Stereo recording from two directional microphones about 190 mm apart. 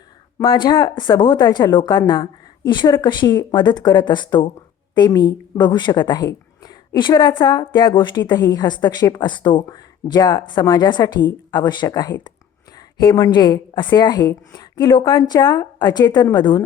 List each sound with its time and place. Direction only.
0.4 s a woman's voice: 20° left (ahead or behind)